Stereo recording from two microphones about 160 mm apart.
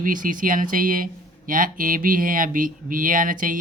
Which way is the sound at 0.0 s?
55° right (ahead or behind).